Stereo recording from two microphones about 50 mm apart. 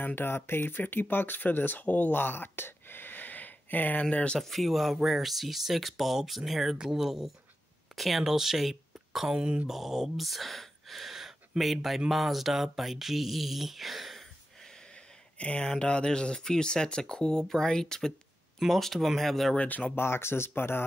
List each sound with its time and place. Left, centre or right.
0.0 s speech: left
2.1 s a sound: left
4.0 s speech: left
4.4 s speech: centre
9.3 s speech: centre
9.7 s speech: centre
15.3 s speech: left; by 19.5 s centre
20.0 s speech: left